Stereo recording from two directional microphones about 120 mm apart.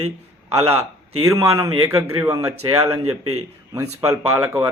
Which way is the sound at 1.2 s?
25° right (ahead or behind).